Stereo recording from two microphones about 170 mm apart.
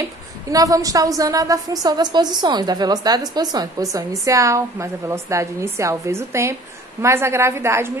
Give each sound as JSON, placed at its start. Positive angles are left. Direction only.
{"t": 0.5, "sound": "a woman's voice", "side_deg": -20}